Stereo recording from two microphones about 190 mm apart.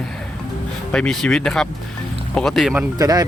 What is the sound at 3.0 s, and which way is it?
Speech, 20° right (ahead or behind).